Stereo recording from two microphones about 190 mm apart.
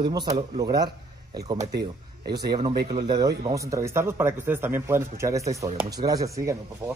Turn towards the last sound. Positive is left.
turn(degrees=-15)  # may be behind; listen again after turning